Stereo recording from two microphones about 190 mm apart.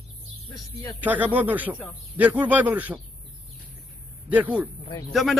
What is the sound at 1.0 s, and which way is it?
Speech, 10° right (ahead or behind).